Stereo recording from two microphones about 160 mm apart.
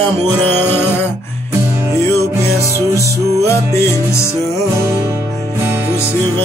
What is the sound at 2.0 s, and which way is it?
Music, 20° left (ahead or behind).